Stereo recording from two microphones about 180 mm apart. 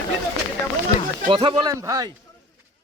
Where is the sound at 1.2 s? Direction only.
25° right (ahead or behind).